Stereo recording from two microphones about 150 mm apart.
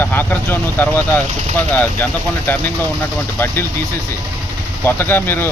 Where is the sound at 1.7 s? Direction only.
10° left (ahead or behind).